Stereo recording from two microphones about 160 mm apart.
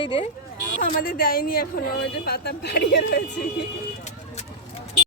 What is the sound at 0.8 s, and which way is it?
Speech, 65° left (ahead or behind).